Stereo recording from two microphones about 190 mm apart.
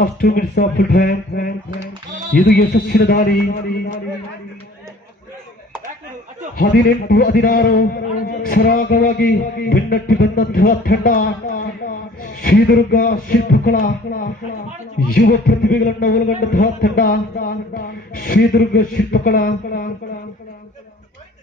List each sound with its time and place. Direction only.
0.0 s a man's voice: 50° left (ahead or behind)
6.5 s a man's voice: 50° left (ahead or behind)